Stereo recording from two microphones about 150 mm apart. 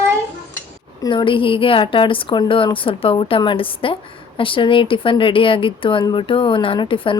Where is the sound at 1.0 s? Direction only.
35° left (ahead or behind).